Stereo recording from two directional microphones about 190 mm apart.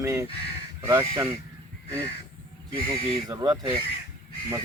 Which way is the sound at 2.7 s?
30° left (ahead or behind).